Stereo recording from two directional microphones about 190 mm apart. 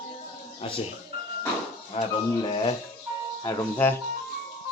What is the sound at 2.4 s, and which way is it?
Speech, 25° left (ahead or behind).